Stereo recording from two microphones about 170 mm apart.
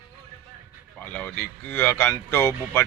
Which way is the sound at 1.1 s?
10° left (ahead or behind).